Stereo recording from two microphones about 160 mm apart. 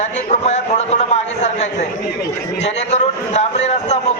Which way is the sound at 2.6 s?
45° left (ahead or behind).